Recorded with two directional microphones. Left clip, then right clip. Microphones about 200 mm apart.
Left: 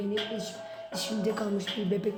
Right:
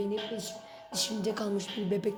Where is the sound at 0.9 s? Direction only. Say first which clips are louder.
Left 1 dB; 35° right (ahead or behind).